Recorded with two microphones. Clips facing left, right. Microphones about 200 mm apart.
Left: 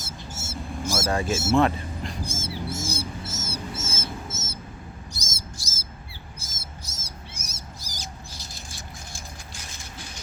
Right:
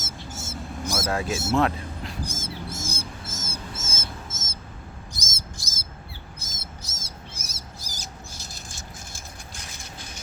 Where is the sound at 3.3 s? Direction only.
50° right (ahead or behind).